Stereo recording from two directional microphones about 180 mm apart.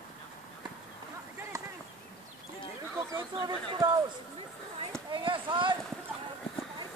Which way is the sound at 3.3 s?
25° right (ahead or behind).